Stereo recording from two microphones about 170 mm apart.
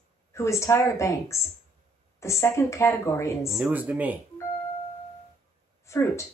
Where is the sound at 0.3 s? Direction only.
15° left (ahead or behind).